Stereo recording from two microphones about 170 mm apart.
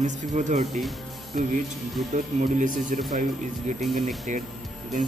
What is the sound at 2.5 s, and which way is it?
Speech, 50° right (ahead or behind).